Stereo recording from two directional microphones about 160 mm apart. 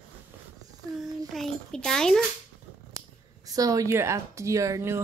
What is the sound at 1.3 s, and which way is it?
Speech, 5° left (ahead or behind).